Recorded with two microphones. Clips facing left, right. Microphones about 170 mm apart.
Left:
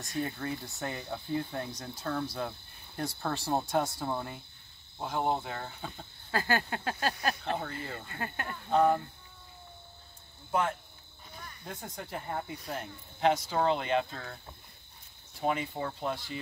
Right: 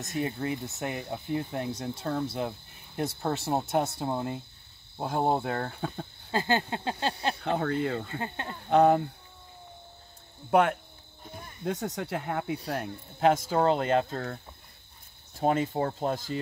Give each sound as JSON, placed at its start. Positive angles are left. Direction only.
{"t": 0.0, "sound": "speech", "side_deg": -20}
{"t": 5.0, "sound": "speech", "side_deg": -40}
{"t": 5.4, "sound": "speech", "side_deg": -55}
{"t": 6.3, "sound": "speech", "side_deg": -20}
{"t": 7.4, "sound": "speech", "side_deg": -65}
{"t": 8.1, "sound": "speech", "side_deg": -25}
{"t": 8.6, "sound": "speech", "side_deg": -70}
{"t": 10.5, "sound": "speech", "side_deg": -65}
{"t": 12.6, "sound": "speech", "side_deg": -65}
{"t": 13.2, "sound": "speech", "side_deg": -45}